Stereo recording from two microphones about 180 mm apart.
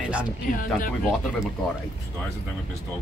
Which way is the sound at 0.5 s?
50° left (ahead or behind).